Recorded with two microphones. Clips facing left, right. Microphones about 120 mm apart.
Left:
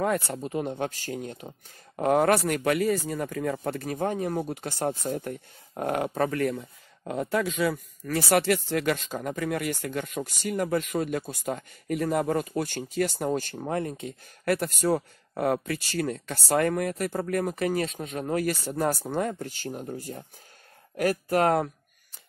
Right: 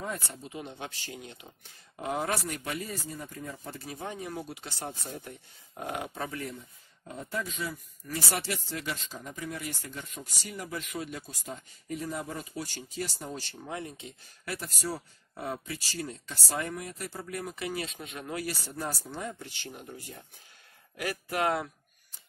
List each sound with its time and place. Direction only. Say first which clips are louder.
0.0 s speech: left 11 dB; 65° left (ahead or behind); by 1.5 s 45° left (ahead or behind)
2.0 s speech: left 10 dB; 60° left (ahead or behind)
3.1 s speech: left 11 dB; 85° left; by 21.6 s 45° left (ahead or behind)